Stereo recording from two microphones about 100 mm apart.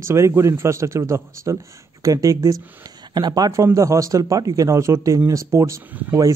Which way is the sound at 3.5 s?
30° right (ahead or behind).